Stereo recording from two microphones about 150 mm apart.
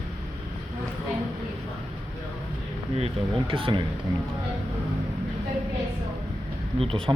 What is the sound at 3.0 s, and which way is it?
Speech, 35° right (ahead or behind).